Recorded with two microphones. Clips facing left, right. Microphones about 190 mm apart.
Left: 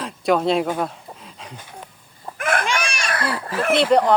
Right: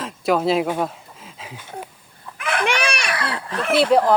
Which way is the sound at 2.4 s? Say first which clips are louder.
Left 2 dB; 50° left (ahead or behind).